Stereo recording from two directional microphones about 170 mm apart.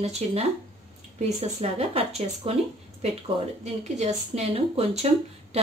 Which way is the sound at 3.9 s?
40° right (ahead or behind).